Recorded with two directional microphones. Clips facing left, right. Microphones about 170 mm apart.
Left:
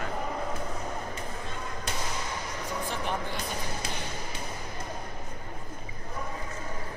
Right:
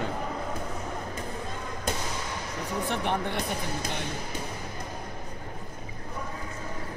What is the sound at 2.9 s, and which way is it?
Speech, 65° right (ahead or behind).